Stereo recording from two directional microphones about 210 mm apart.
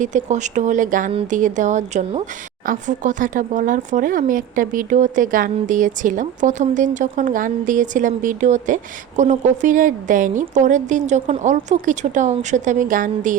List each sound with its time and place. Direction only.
0.0 s speech: 35° right (ahead or behind)